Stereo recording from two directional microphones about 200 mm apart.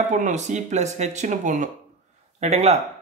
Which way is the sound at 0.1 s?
40° right (ahead or behind).